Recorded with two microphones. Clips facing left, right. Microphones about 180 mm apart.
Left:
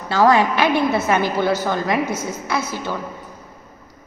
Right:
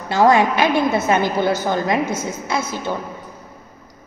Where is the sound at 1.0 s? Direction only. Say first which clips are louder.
Right 1 dB; 20° right (ahead or behind).